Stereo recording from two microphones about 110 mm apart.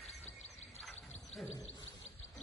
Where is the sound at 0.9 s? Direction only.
85° left.